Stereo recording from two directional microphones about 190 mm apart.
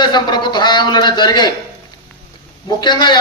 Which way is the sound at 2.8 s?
25° left (ahead or behind).